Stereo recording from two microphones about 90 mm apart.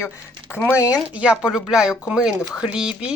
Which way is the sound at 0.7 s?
40° left (ahead or behind).